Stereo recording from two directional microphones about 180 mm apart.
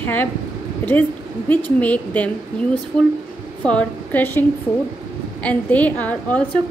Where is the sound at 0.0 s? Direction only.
10° left (ahead or behind).